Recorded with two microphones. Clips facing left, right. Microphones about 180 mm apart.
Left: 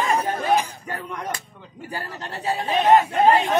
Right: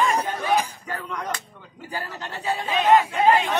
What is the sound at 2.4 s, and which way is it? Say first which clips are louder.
Speech: left 2 dB; 35° left (ahead or behind).